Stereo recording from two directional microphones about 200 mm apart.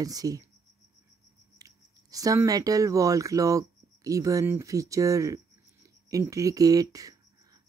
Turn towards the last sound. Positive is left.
turn(degrees=-15)  # may be behind; listen again after turning